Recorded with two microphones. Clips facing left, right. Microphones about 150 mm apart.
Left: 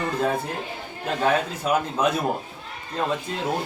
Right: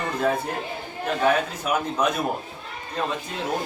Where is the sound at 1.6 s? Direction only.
30° left (ahead or behind).